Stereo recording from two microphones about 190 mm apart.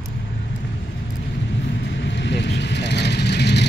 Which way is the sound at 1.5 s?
65° left (ahead or behind).